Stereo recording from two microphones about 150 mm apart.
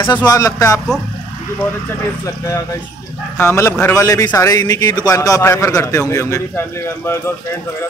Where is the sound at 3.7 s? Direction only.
15° left (ahead or behind).